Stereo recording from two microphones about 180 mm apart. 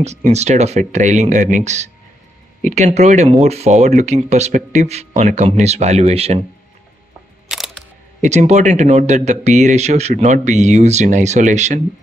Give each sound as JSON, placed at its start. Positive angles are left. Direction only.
{"t": 0.0, "sound": "speech", "side_deg": -40}
{"t": 7.4, "sound": "music", "side_deg": 0}
{"t": 8.2, "sound": "speech", "side_deg": -40}